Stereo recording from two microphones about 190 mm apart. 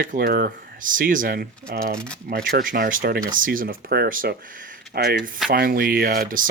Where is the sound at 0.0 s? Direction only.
50° right (ahead or behind).